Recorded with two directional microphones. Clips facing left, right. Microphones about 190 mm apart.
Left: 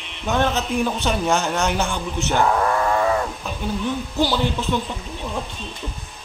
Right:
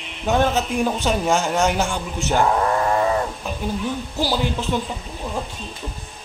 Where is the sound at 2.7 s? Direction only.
30° right (ahead or behind).